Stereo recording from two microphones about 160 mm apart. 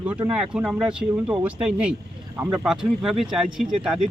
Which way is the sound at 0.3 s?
5° right (ahead or behind).